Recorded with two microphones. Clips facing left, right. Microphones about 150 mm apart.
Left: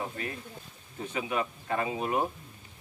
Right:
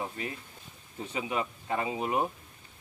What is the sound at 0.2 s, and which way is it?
A man's voice, 20° right (ahead or behind).